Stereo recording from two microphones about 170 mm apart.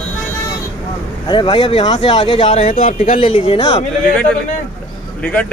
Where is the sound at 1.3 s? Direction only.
30° left (ahead or behind).